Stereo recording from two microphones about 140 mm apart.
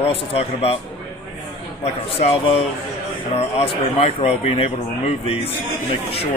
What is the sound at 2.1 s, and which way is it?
Speech, 45° left (ahead or behind).